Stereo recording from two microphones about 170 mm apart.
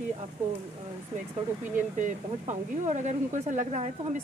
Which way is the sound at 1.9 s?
45° right (ahead or behind).